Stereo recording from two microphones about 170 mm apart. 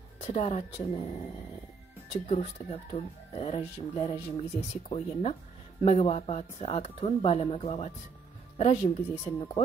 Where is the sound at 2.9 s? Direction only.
35° left (ahead or behind).